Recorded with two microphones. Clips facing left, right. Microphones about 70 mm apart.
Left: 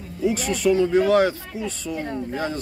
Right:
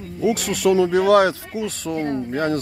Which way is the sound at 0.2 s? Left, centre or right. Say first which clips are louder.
Right 2 dB; right.